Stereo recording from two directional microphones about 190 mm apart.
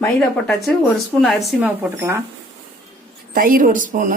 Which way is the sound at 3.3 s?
50° right (ahead or behind).